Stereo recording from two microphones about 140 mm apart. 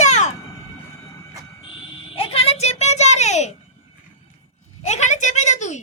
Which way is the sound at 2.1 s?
45° left (ahead or behind).